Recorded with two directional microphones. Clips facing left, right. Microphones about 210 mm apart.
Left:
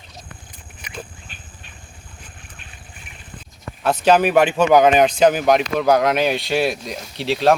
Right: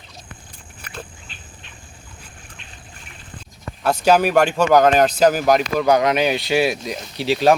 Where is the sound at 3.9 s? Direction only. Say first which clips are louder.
Left 1 dB; 5° right (ahead or behind).